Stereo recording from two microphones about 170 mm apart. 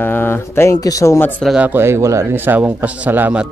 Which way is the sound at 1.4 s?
5° right (ahead or behind).